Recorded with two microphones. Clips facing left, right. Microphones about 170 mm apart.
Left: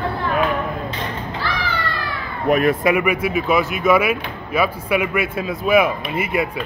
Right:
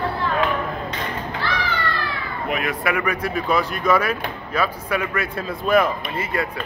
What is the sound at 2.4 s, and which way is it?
Speech, 40° left (ahead or behind).